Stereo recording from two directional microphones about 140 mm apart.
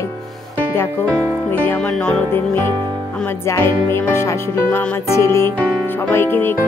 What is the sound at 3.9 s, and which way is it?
Music, 15° left (ahead or behind).